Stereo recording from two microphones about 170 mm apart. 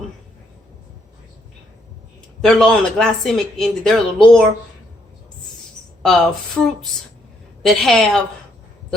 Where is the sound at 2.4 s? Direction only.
5° left (ahead or behind).